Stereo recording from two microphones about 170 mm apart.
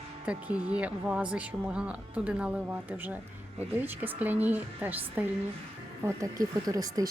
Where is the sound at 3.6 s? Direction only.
10° right (ahead or behind).